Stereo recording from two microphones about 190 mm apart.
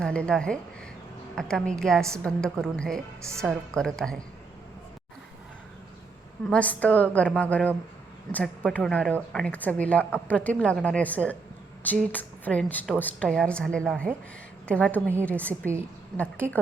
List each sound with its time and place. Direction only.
0.0 s a woman's voice: 5° left (ahead or behind)
6.5 s a woman's voice: 5° left (ahead or behind)